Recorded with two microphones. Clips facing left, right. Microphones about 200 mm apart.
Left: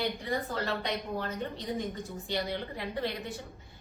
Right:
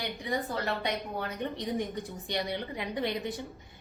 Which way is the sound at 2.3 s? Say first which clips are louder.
Even; 15° right (ahead or behind).